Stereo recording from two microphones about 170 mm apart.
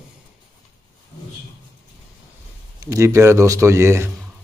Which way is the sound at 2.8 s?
15° right (ahead or behind).